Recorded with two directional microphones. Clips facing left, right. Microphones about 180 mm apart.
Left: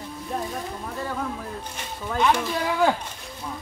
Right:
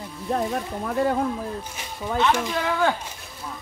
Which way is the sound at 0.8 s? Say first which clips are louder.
Right 12 dB; 60° right (ahead or behind).